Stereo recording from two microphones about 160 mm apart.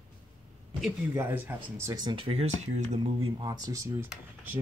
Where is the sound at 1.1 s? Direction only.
15° right (ahead or behind).